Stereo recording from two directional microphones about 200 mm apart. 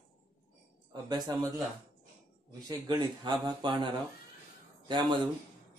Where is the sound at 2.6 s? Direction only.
20° right (ahead or behind).